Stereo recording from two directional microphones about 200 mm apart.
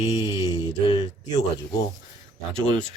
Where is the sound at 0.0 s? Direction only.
30° left (ahead or behind).